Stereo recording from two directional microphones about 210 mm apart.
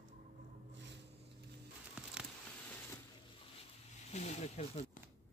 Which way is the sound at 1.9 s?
5° right (ahead or behind).